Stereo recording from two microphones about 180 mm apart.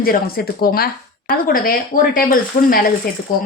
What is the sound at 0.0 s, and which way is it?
A woman's voice, 55° left (ahead or behind).